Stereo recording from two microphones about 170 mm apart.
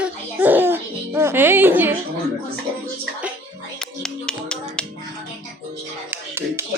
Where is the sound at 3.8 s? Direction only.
5° left (ahead or behind).